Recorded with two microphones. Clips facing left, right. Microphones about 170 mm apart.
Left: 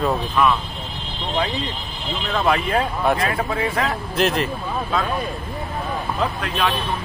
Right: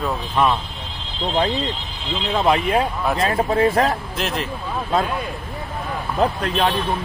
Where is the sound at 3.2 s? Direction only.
30° right (ahead or behind).